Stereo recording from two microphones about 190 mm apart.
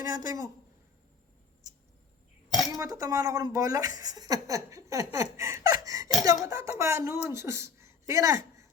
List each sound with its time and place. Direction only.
0.0 s speech: 20° right (ahead or behind)
2.5 s a sound: 20° left (ahead or behind)
2.7 s a woman's voice: 20° right (ahead or behind)